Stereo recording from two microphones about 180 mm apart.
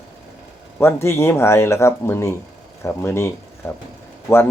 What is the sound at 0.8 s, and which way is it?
Speech, 15° left (ahead or behind).